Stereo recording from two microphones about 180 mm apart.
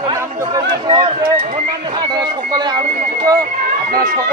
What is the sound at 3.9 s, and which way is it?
Speech, 50° right (ahead or behind).